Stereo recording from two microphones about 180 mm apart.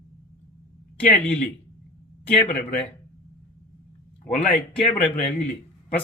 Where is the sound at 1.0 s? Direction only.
5° left (ahead or behind).